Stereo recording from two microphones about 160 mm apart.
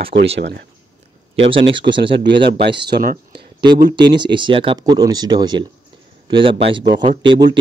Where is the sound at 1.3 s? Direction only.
35° right (ahead or behind).